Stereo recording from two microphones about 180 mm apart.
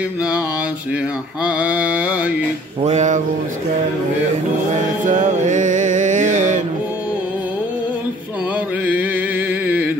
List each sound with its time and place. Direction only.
1.4 s mantra: 5° right (ahead or behind)
2.8 s music: 40° right (ahead or behind)
5.0 s music: 45° right (ahead or behind)
8.8 s music: 10° right (ahead or behind)